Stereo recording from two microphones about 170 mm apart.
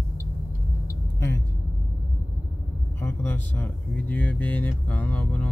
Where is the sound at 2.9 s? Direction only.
10° left (ahead or behind).